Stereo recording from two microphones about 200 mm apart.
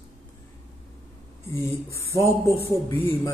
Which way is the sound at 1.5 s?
15° left (ahead or behind).